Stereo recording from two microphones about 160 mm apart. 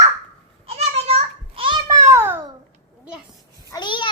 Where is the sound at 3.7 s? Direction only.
30° left (ahead or behind).